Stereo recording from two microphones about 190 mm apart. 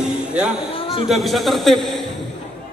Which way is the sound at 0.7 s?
30° left (ahead or behind).